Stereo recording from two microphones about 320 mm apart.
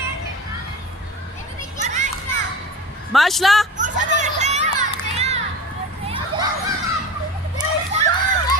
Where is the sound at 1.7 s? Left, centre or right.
Right.